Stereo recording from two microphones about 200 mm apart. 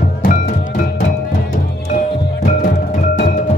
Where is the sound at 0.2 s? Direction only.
40° left (ahead or behind).